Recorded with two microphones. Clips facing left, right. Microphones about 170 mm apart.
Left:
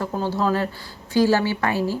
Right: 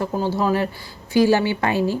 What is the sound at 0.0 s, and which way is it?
Speech, 10° right (ahead or behind).